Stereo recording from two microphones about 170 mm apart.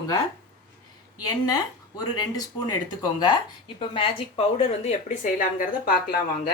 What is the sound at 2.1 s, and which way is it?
Speech, 20° left (ahead or behind).